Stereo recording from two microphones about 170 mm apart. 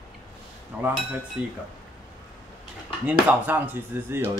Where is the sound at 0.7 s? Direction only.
10° right (ahead or behind).